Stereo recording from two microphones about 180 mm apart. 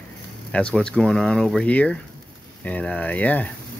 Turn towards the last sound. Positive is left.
turn(degrees=10)  # may be behind; listen again after turning